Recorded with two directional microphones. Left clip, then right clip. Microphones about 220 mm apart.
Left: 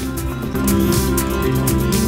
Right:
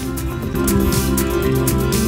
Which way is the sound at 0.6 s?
Centre (ahead or behind).